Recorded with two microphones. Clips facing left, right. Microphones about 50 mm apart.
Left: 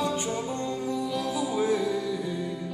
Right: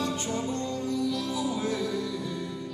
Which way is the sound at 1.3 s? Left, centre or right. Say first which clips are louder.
Left 3 dB; centre.